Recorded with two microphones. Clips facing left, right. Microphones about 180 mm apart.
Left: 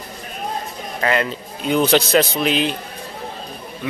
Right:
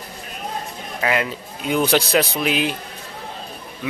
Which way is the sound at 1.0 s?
5° right (ahead or behind).